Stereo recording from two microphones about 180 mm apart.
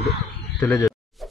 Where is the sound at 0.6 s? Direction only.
15° left (ahead or behind).